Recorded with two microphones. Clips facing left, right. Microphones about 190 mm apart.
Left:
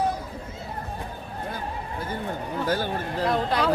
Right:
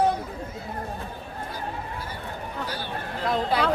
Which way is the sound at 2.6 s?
45° left (ahead or behind).